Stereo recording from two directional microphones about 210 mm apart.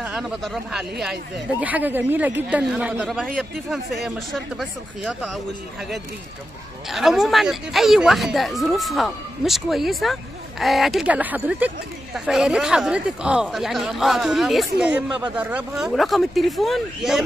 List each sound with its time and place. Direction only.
0.0 s speech: 5° right (ahead or behind)
6.9 s speech: centre (ahead or behind)